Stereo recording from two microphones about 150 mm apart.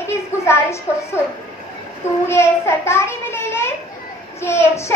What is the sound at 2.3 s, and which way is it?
A child's voice, 15° left (ahead or behind).